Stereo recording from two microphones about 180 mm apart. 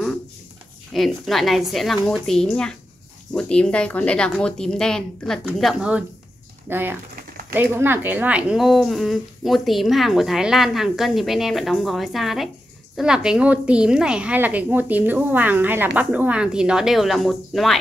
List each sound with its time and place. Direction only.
0.9 s a woman's voice: centre (ahead or behind)